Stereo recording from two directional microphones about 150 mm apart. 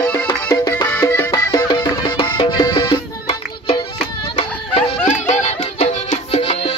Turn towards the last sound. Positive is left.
turn(degrees=40)  # may be behind; listen again after turning